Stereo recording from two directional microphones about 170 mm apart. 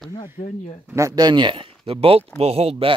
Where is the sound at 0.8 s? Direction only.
15° right (ahead or behind).